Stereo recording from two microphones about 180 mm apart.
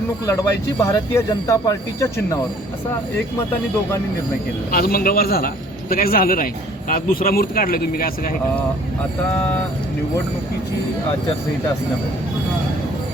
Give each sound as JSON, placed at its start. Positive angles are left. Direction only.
{"t": 0.8, "sound": "speech", "side_deg": 15}
{"t": 4.7, "sound": "a man's voice", "side_deg": 55}